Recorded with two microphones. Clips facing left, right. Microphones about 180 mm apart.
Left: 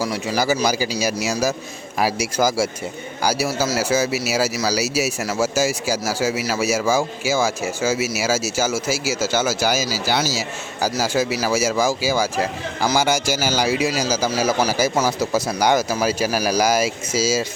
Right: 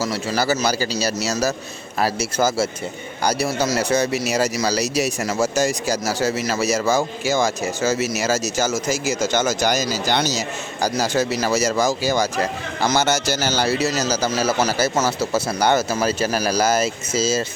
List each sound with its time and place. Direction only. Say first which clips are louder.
0.0 s speech: even; 10° left (ahead or behind)